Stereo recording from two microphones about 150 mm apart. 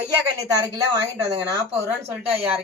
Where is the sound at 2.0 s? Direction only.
15° right (ahead or behind).